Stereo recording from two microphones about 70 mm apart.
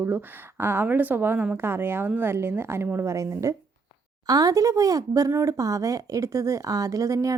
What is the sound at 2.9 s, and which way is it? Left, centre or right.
Speech, right.